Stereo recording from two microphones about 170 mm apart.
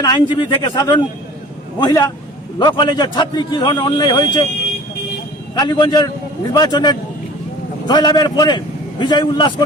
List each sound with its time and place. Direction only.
0.0 s a man's voice: 25° left (ahead or behind)
5.5 s a man's voice: 25° left (ahead or behind)